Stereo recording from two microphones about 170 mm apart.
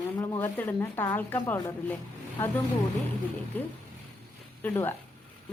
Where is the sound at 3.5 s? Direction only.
10° left (ahead or behind).